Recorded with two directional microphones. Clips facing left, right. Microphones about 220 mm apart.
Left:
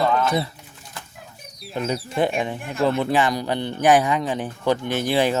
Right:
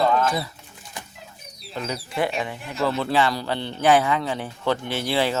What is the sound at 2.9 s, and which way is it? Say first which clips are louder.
A man's voice: left 2 dB; 15° left (ahead or behind).